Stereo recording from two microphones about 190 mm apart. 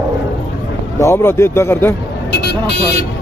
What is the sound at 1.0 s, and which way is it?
Speech, 15° left (ahead or behind).